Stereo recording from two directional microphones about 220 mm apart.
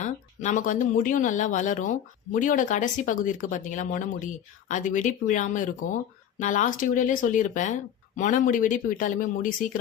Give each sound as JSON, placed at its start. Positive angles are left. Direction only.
{"t": 0.0, "sound": "speech", "side_deg": 35}